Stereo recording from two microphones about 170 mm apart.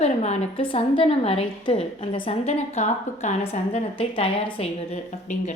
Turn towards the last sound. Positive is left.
turn(degrees=45)  # may be behind; listen again after turning